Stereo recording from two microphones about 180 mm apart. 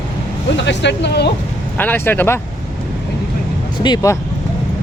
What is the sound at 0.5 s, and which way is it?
Speech, 75° left (ahead or behind).